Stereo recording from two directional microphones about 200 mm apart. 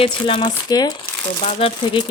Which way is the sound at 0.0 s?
25° left (ahead or behind).